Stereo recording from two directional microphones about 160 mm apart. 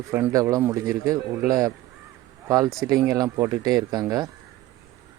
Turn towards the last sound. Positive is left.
turn(degrees=-25)  # may be behind; listen again after turning